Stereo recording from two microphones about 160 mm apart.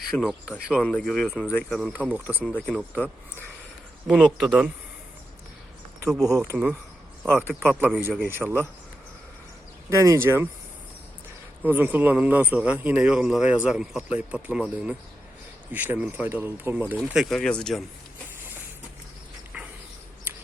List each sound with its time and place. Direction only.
0.1 s speech: centre (ahead or behind)
2.0 s a man's voice: 10° right (ahead or behind)
2.4 s speech: 5° left (ahead or behind)
4.0 s speech: 5° right (ahead or behind)
6.2 s a man's voice: 20° right (ahead or behind)
7.3 s a man's voice: 5° left (ahead or behind); by 8.5 s 10° right (ahead or behind)
9.9 s a man's voice: 20° right (ahead or behind)
11.6 s a man's voice: 10° right (ahead or behind)
17.0 s speech: centre (ahead or behind)
19.5 s a sound: 10° right (ahead or behind)